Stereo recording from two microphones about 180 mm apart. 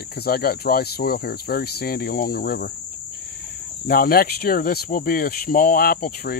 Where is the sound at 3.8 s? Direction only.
55° left (ahead or behind).